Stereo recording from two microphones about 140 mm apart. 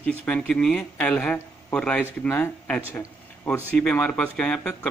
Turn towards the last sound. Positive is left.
turn(degrees=10)  # may be behind; listen again after turning